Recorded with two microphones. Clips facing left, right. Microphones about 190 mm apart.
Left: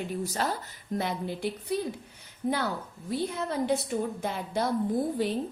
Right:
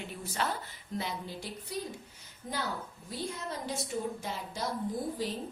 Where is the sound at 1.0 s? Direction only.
60° left (ahead or behind).